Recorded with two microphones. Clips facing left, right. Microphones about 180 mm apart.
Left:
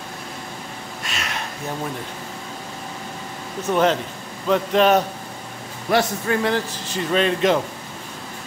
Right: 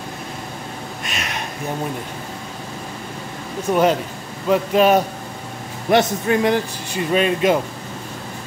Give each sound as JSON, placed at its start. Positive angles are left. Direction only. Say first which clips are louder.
{"t": 1.0, "sound": "a sound", "louder": "right 1 dB", "side_deg": -20}
{"t": 3.6, "sound": "a man's voice", "louder": "right 2 dB", "side_deg": -10}
{"t": 5.9, "sound": "a man's voice", "louder": "right 4 dB", "side_deg": -20}